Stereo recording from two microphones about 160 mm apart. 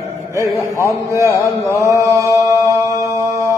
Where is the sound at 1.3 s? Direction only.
20° left (ahead or behind).